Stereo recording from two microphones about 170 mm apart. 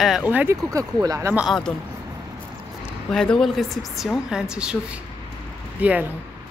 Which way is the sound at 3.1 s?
5° left (ahead or behind).